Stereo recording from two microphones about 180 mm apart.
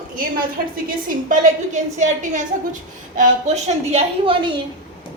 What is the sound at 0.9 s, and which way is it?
A woman's voice, 50° right (ahead or behind).